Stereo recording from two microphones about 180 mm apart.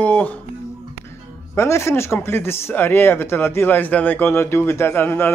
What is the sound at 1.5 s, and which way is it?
Speech, 15° left (ahead or behind).